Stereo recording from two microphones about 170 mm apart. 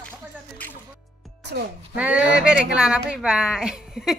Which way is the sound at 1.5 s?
90° right.